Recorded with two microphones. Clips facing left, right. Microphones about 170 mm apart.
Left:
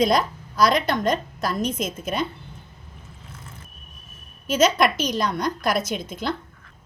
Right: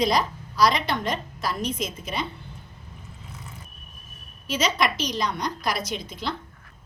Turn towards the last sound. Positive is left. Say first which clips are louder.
# left 4 dB
turn(degrees=50)  # may be behind; listen again after turning